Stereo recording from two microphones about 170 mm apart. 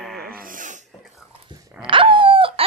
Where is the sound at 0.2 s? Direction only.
60° right (ahead or behind).